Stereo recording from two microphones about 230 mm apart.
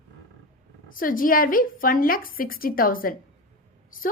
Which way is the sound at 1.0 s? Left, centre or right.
Left.